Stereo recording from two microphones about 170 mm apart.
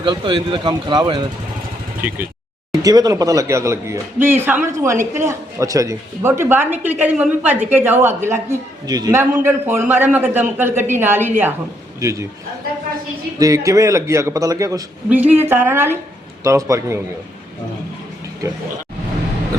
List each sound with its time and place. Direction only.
0.0 s a man's voice: 30° right (ahead or behind)
2.0 s speech: 10° right (ahead or behind)
2.8 s a man's voice: 20° right (ahead or behind)
13.4 s a man's voice: 20° right (ahead or behind)